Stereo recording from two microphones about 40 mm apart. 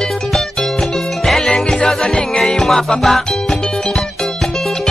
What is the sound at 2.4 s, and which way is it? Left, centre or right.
Music, centre.